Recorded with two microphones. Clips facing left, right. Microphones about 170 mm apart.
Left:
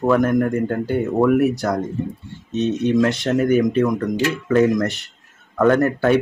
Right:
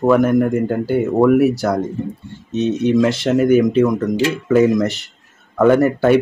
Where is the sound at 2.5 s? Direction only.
20° right (ahead or behind).